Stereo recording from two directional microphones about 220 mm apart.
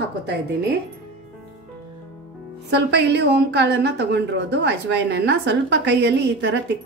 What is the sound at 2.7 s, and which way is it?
A woman's voice, 50° right (ahead or behind).